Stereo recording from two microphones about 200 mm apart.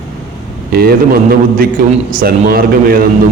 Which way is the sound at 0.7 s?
50° right (ahead or behind).